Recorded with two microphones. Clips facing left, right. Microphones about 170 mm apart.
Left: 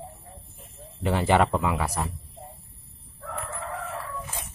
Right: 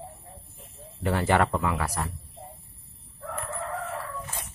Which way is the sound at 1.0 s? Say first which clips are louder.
Left 2 dB; 20° left (ahead or behind).